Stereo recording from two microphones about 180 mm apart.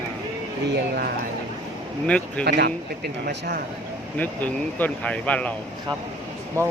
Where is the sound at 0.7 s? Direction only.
70° right (ahead or behind).